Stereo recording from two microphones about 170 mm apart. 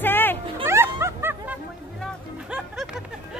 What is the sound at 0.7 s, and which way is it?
Music, 15° right (ahead or behind).